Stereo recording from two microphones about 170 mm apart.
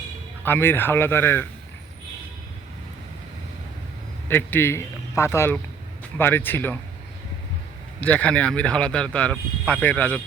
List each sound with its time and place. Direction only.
0.4 s speech: 10° left (ahead or behind)
4.3 s speech: 10° left (ahead or behind)
8.0 s speech: 10° left (ahead or behind)